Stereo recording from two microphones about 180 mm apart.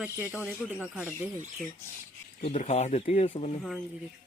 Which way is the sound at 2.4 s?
35° left (ahead or behind).